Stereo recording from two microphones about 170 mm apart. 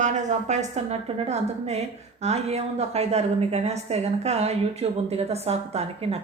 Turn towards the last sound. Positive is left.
turn(degrees=-35)  # may be behind; listen again after turning